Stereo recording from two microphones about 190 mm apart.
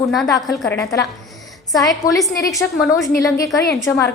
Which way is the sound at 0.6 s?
10° left (ahead or behind).